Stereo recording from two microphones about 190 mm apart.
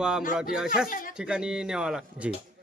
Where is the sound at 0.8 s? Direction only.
45° left (ahead or behind).